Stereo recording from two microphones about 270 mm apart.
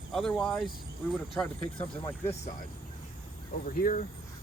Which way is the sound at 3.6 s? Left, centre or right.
Left.